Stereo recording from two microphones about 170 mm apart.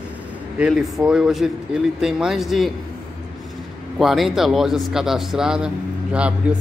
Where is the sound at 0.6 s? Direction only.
Centre (ahead or behind).